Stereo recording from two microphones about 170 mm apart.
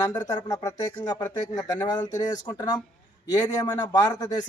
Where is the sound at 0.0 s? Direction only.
20° left (ahead or behind).